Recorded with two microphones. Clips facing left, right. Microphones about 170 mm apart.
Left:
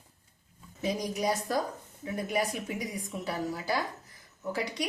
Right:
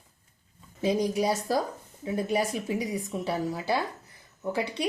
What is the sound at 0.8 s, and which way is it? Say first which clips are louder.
Speech: right 6 dB; 30° right (ahead or behind).